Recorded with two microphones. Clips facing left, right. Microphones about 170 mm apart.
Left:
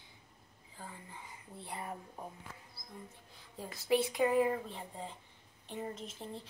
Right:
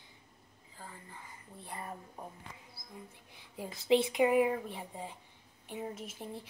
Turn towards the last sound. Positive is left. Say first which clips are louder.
# right 1 dB
turn(degrees=-10)  # may be behind; listen again after turning